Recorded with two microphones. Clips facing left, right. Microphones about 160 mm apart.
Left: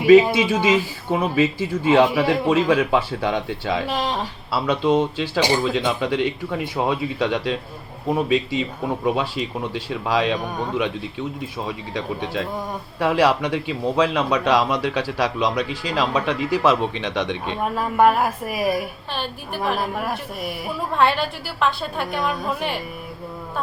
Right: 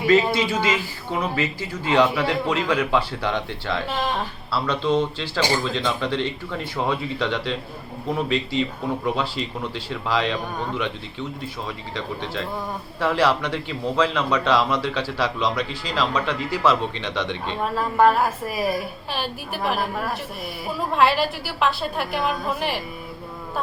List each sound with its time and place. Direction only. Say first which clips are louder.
0.0 s a man's voice: left 6 dB; 15° left (ahead or behind)
11.6 s a man's voice: left 5 dB; 15° left (ahead or behind)
19.1 s a woman's voice: even; 5° right (ahead or behind)
20.9 s a woman's voice: even; 5° right (ahead or behind)